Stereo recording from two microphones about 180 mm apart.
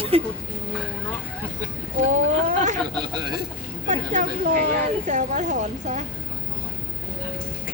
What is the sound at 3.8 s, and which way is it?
A woman's voice, 45° right (ahead or behind).